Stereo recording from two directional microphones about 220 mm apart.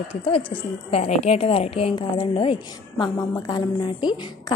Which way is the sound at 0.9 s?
30° left (ahead or behind).